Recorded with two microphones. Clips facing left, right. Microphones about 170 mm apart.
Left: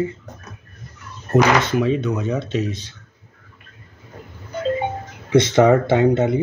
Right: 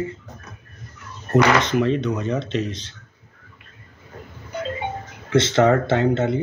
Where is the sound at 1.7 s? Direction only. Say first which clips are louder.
Left 1 dB; 5° left (ahead or behind).